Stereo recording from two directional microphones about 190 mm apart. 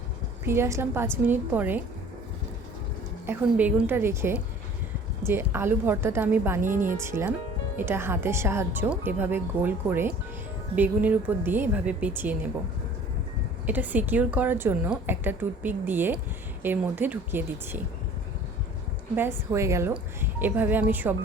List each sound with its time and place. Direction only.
0.4 s a woman's voice: 15° right (ahead or behind)
3.2 s a woman's voice: 10° right (ahead or behind)
13.7 s a woman's voice: 10° right (ahead or behind)
19.1 s a woman's voice: 10° right (ahead or behind)